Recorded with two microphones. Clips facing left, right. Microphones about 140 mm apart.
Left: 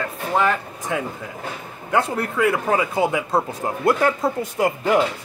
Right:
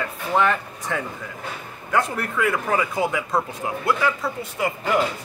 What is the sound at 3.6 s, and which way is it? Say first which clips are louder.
Speech: left 4 dB; 45° left (ahead or behind).